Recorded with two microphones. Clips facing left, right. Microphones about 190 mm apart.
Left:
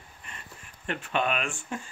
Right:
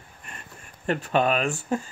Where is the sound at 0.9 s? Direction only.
40° right (ahead or behind).